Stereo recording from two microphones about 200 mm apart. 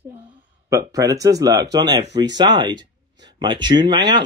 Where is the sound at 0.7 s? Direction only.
15° right (ahead or behind).